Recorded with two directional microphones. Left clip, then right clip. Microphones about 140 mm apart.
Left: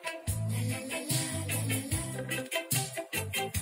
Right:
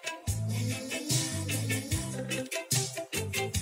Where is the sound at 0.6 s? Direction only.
35° right (ahead or behind).